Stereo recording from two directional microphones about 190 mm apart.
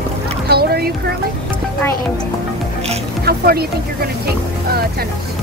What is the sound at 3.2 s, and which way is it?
Speech, 55° right (ahead or behind).